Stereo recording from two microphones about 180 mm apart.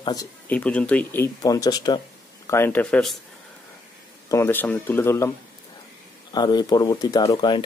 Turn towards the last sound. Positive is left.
turn(degrees=20)  # may be behind; listen again after turning